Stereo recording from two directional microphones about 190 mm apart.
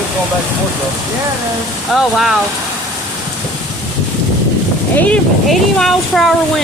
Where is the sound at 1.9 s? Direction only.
Centre (ahead or behind).